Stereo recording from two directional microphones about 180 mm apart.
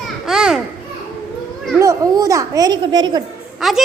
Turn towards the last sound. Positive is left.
turn(degrees=0)  # may be behind; listen again after turning